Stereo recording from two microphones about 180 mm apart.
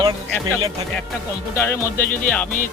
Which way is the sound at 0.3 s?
10° left (ahead or behind).